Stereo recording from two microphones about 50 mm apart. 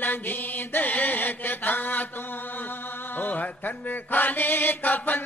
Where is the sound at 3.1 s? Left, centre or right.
Left.